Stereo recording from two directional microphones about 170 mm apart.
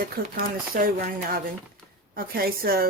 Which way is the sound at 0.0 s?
60° right (ahead or behind).